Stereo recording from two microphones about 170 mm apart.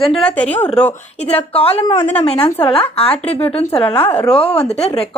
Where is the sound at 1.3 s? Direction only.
35° left (ahead or behind).